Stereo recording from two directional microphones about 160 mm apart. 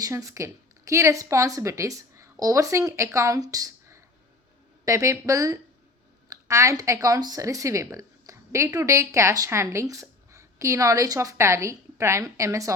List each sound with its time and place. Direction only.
0.0 s a woman's voice: 20° right (ahead or behind)